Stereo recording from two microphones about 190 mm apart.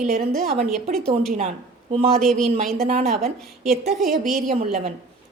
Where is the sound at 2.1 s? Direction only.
Centre (ahead or behind).